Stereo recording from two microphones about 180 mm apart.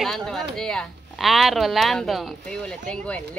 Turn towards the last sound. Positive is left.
turn(degrees=5)  # may be behind; listen again after turning